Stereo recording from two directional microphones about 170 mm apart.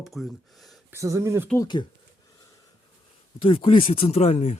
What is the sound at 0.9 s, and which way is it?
Speech, 15° right (ahead or behind).